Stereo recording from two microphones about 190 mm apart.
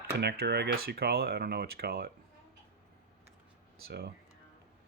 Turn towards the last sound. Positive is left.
turn(degrees=-55)  # may be behind; listen again after turning